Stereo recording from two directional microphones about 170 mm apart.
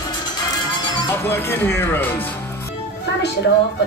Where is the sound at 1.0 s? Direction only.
15° left (ahead or behind).